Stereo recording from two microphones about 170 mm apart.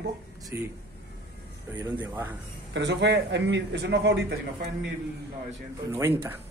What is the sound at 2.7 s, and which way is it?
A man's voice, 90° right.